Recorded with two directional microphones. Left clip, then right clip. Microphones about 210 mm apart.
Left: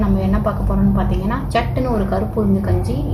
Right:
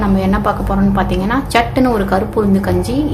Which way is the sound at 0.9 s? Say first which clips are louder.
Right 6 dB; 50° right (ahead or behind).